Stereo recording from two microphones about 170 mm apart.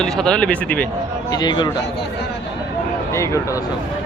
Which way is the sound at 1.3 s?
25° left (ahead or behind).